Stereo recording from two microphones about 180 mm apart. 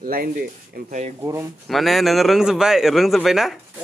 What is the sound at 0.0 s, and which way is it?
Speech, 55° right (ahead or behind).